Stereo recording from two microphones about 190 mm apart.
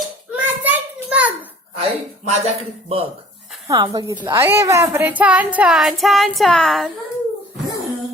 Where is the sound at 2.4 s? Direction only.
30° right (ahead or behind).